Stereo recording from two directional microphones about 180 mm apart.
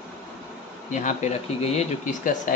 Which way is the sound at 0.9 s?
40° left (ahead or behind).